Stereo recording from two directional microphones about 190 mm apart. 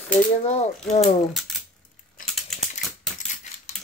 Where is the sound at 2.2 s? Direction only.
45° left (ahead or behind).